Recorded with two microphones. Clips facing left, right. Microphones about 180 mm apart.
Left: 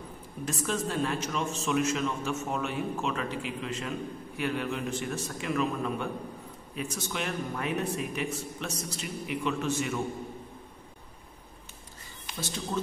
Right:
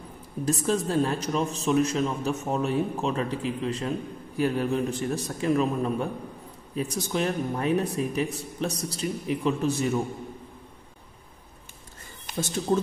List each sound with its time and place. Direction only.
0.5 s a man's voice: 35° right (ahead or behind)
12.3 s speech: 50° right (ahead or behind)